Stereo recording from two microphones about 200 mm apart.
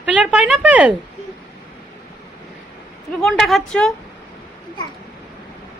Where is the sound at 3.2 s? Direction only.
Centre (ahead or behind).